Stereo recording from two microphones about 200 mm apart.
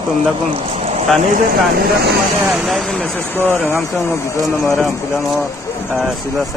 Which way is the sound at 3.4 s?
10° right (ahead or behind).